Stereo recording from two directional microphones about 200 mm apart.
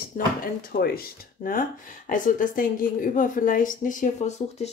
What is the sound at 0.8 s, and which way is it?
Speech, 45° left (ahead or behind).